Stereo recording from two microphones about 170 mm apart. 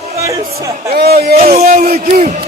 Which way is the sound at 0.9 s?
65° right (ahead or behind).